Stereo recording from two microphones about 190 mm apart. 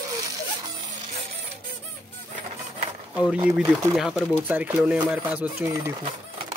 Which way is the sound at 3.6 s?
15° right (ahead or behind).